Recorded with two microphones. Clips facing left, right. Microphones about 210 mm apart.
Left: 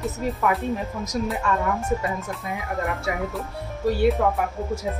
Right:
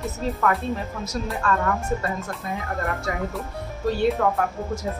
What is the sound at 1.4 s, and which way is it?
Speech, 15° left (ahead or behind).